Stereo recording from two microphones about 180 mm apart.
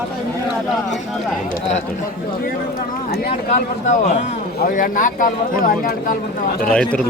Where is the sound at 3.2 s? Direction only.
50° left (ahead or behind).